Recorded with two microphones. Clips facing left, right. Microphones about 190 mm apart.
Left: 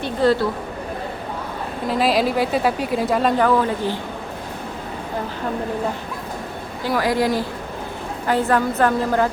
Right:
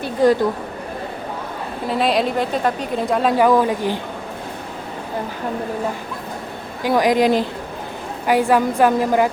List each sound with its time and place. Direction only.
0.0 s a woman's voice: 15° right (ahead or behind)
1.9 s a woman's voice: centre (ahead or behind)
3.4 s a woman's voice: 15° right (ahead or behind)
6.8 s a woman's voice: 15° right (ahead or behind)